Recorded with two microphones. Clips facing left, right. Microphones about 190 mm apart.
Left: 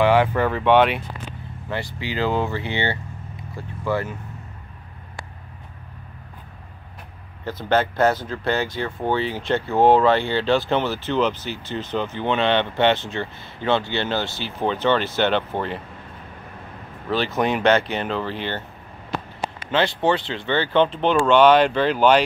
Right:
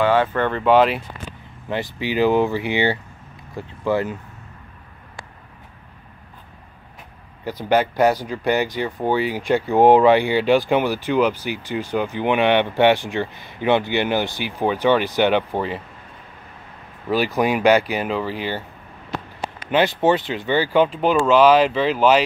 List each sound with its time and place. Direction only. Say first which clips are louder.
0.0 s speech: left 1 dB; 15° left (ahead or behind)
1.7 s speech: right 4 dB; 20° right (ahead or behind)
7.4 s speech: right 2 dB; 10° right (ahead or behind)
17.4 s speech: right 2 dB; 10° right (ahead or behind)
19.7 s speech: right 3 dB; 15° right (ahead or behind)